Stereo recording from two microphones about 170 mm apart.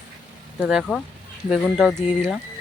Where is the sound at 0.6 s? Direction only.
Centre (ahead or behind).